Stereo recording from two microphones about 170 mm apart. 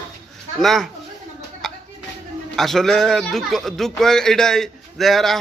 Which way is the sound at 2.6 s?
Centre (ahead or behind).